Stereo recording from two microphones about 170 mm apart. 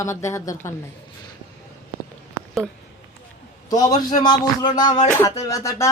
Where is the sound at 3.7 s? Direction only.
20° left (ahead or behind).